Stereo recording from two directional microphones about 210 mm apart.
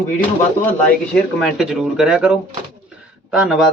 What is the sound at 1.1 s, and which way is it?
Speech, centre (ahead or behind).